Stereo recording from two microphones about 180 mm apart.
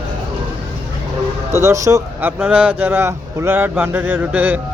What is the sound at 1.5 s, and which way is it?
A man's voice, 15° right (ahead or behind).